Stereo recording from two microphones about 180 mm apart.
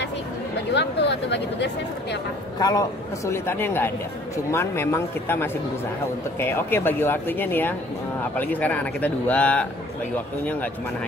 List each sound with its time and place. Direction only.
0.7 s speech: 75° left (ahead or behind)
2.6 s speech: 20° left (ahead or behind)